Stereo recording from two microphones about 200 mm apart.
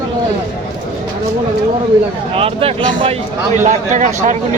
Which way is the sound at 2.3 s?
30° right (ahead or behind).